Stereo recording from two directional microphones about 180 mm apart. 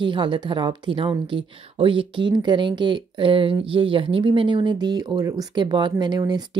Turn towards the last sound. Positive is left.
turn(degrees=-20)  # may be behind; listen again after turning